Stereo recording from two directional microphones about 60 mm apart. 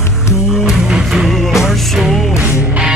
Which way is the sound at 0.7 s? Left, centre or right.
Centre.